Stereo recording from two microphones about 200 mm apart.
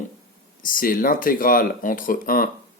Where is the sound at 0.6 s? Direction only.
45° left (ahead or behind).